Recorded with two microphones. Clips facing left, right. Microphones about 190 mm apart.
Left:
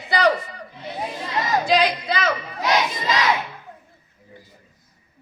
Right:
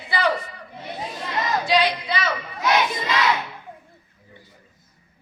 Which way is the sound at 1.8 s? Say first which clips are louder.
Left 2 dB; 40° left (ahead or behind).